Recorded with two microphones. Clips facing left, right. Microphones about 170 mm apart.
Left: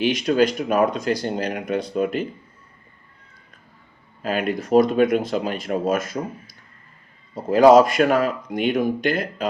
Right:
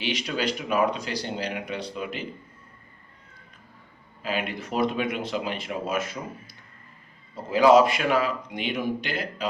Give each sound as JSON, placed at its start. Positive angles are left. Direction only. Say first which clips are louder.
{"t": 0.0, "sound": "speech", "louder": "left 10 dB", "side_deg": 50}
{"t": 4.2, "sound": "speech", "louder": "left 6 dB", "side_deg": 45}